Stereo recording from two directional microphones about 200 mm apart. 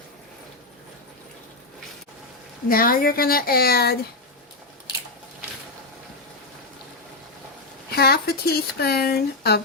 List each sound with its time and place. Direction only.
2.6 s speech: 45° left (ahead or behind)
7.9 s speech: 50° left (ahead or behind)